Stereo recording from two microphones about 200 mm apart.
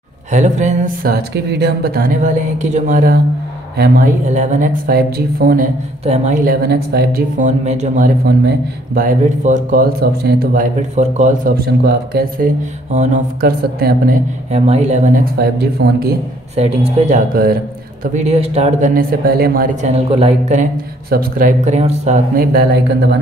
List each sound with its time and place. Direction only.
0.3 s speech: 35° right (ahead or behind)
6.0 s speech: 35° right (ahead or behind); by 12.4 s 50° right (ahead or behind)
12.9 s speech: 35° right (ahead or behind)
14.5 s speech: 30° right (ahead or behind); by 16.2 s 55° right (ahead or behind)
16.5 s speech: 30° right (ahead or behind)
18.1 s speech: 30° right (ahead or behind)
18.9 s speech: 50° right (ahead or behind); by 20.6 s 30° right (ahead or behind)
21.1 s speech: 45° right (ahead or behind)